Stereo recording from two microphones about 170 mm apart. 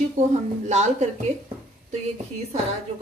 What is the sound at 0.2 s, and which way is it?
Speech, 45° right (ahead or behind).